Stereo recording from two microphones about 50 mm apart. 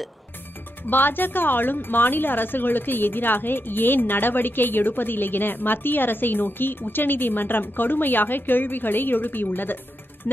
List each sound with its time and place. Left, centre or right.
0.8 s a woman's voice: left